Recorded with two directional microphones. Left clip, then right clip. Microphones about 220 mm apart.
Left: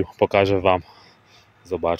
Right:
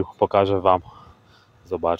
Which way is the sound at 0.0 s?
5° left (ahead or behind).